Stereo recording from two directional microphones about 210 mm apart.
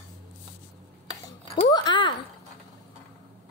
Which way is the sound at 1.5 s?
20° left (ahead or behind).